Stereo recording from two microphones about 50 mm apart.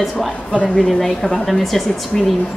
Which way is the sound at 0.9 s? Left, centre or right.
Centre.